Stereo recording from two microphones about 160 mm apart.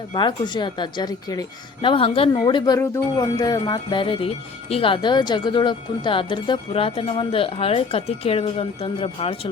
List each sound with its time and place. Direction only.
0.1 s speech: 30° left (ahead or behind)